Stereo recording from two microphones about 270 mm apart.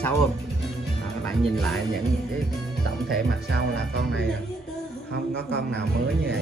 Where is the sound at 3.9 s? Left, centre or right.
Right.